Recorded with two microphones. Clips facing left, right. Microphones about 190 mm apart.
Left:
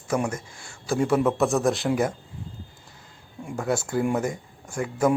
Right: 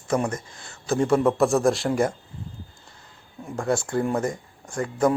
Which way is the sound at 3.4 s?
10° left (ahead or behind).